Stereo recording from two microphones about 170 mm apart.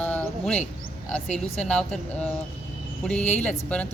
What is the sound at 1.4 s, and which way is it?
Speech, 40° left (ahead or behind).